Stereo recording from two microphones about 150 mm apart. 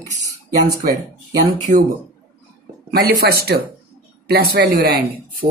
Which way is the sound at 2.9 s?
90° right.